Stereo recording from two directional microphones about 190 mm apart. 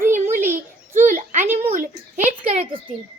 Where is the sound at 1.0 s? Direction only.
45° right (ahead or behind).